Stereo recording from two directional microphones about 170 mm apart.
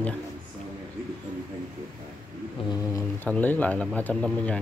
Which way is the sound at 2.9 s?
10° left (ahead or behind).